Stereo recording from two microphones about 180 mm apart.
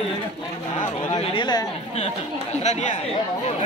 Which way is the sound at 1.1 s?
30° left (ahead or behind).